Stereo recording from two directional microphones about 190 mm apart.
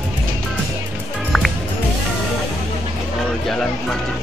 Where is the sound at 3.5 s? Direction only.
5° left (ahead or behind).